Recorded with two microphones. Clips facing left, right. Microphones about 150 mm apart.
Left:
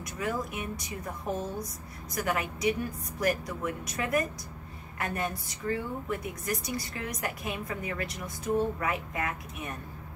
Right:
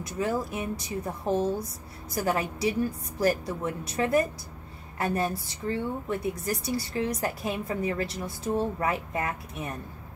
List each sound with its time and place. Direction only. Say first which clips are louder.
0.0 s a woman's voice: right 4 dB; 30° right (ahead or behind)